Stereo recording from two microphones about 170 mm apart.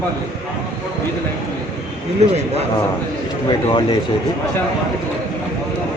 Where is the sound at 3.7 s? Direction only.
30° left (ahead or behind).